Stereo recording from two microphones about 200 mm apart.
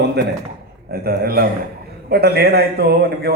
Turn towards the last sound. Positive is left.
turn(degrees=-55)  # may be behind; listen again after turning